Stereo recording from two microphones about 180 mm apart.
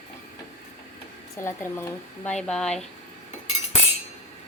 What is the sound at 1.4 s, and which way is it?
Speech, 15° left (ahead or behind).